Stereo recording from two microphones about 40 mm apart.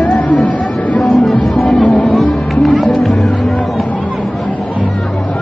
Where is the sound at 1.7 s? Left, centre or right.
Centre.